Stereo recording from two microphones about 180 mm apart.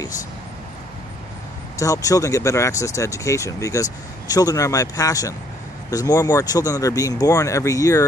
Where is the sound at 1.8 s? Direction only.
20° left (ahead or behind).